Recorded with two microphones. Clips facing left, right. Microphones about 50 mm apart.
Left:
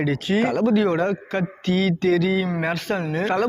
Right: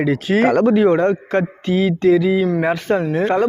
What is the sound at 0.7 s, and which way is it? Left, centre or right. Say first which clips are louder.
Speech: right 6 dB; right.